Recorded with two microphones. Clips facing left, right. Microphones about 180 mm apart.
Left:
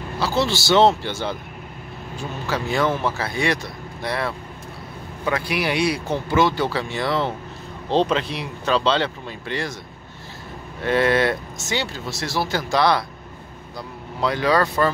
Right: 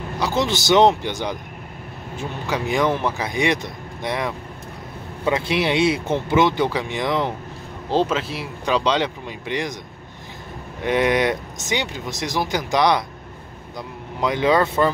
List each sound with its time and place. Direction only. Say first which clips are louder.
0.2 s speech: even; 20° right (ahead or behind)
7.9 s speech: left 1 dB; 5° right (ahead or behind)
10.8 s speech: even; 15° right (ahead or behind)
14.2 s speech: right 1 dB; 20° right (ahead or behind)